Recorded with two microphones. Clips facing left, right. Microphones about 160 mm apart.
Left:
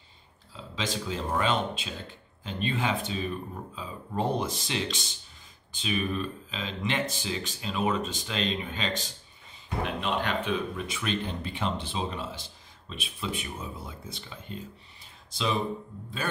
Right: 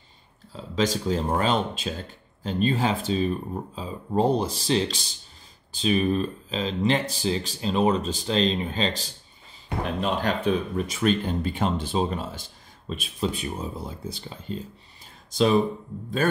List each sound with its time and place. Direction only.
0.5 s speech: 40° right (ahead or behind)